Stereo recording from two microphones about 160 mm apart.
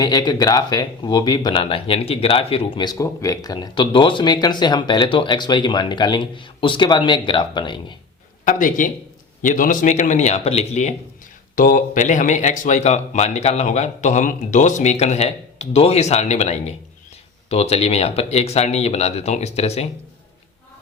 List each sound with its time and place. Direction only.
0.0 s speech: 25° left (ahead or behind)
8.4 s speech: 55° left (ahead or behind)
11.5 s speech: 60° left (ahead or behind); by 19.9 s 40° left (ahead or behind)